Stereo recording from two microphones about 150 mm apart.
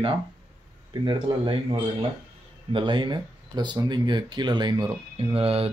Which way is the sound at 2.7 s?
35° right (ahead or behind).